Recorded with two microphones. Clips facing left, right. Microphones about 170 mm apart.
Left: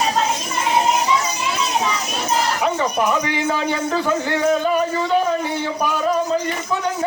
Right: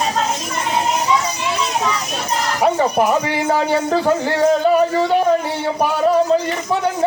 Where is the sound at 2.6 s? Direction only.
35° right (ahead or behind).